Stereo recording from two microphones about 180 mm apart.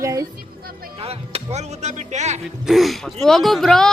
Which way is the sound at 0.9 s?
35° right (ahead or behind).